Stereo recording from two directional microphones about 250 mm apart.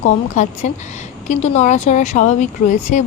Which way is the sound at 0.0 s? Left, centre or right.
Left.